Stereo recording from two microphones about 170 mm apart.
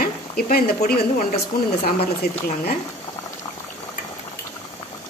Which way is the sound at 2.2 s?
65° left (ahead or behind).